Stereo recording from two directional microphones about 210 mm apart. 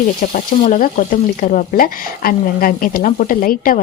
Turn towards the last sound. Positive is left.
turn(degrees=40)  # may be behind; listen again after turning